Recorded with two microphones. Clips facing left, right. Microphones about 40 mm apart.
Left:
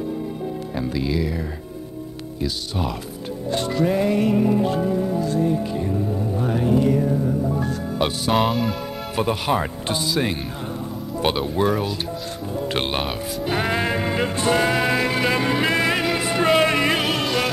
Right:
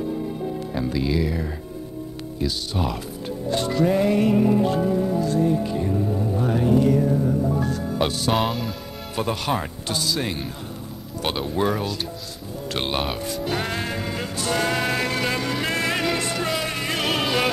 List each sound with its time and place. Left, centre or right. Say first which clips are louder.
3.8 s music: even; centre
4.6 s speech: even; left
6.4 s music: even; left
6.9 s music: even; centre
8.3 s speech: left 3 dB; centre
9.8 s speech: left 1 dB; left
10.6 s music: left 6 dB; left
11.3 s music: right 1 dB; centre
12.4 s speech: left 3 dB; left; by 13.5 s centre
13.5 s music: left 6 dB; centre
14.5 s music: left 2 dB; centre
16.5 s music: left 9 dB; left
17.0 s music: even; centre